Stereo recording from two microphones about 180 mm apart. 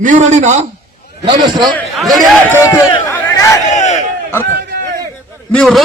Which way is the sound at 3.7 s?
40° left (ahead or behind).